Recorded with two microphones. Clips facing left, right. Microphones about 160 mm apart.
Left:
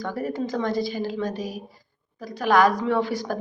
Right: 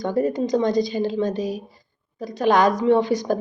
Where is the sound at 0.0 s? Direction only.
20° right (ahead or behind).